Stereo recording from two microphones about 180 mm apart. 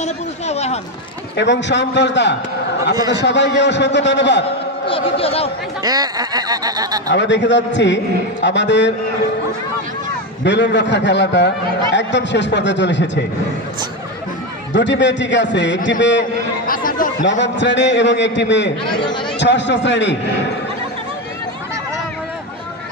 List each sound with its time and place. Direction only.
0.0 s speech: 35° left (ahead or behind)
1.3 s a man's voice: 75° left (ahead or behind)
4.8 s speech: 30° left (ahead or behind)
5.9 s a sound: 20° right (ahead or behind)
7.2 s a man's voice: 80° left
10.4 s a man's voice: 75° left (ahead or behind)
14.7 s a man's voice: 80° left
16.6 s chatter: 50° left (ahead or behind)
17.2 s a man's voice: 80° left
18.9 s speech: 25° left (ahead or behind)
19.4 s a man's voice: 80° left